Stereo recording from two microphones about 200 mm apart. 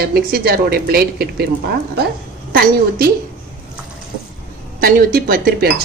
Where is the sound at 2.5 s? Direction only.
50° right (ahead or behind).